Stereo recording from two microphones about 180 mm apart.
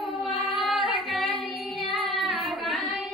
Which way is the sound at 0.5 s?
Centre (ahead or behind).